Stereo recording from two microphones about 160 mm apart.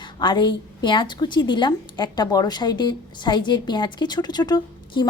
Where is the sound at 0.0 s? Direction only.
30° left (ahead or behind).